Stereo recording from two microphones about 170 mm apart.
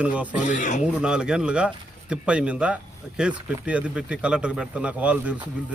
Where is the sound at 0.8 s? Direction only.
5° right (ahead or behind).